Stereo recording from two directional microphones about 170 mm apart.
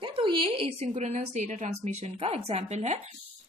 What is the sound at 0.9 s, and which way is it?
A woman's voice, 45° right (ahead or behind).